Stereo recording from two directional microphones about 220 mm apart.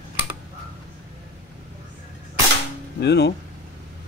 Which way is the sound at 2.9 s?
50° left (ahead or behind).